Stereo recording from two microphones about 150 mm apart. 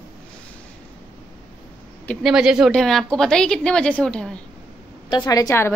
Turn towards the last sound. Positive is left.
turn(degrees=20)  # may be behind; listen again after turning